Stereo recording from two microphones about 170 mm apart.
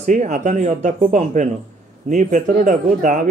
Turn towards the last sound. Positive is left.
turn(degrees=-45)  # may be behind; listen again after turning